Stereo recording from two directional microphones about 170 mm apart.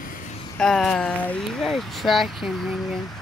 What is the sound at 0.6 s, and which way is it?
Speech, 5° left (ahead or behind).